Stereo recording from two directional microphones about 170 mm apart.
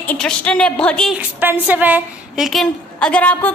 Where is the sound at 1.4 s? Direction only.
10° right (ahead or behind).